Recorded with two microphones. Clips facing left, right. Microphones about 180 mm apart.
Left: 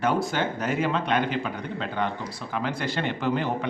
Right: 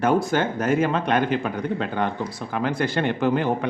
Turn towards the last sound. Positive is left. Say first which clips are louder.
# right 5 dB
turn(degrees=-50)  # may be behind; listen again after turning